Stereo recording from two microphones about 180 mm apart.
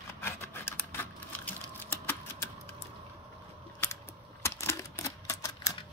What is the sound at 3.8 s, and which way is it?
Typewriter, 15° left (ahead or behind).